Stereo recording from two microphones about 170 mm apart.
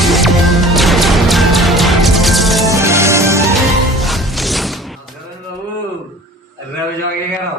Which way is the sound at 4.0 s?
Centre (ahead or behind).